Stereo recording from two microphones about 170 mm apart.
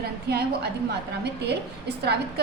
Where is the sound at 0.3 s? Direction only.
70° right (ahead or behind).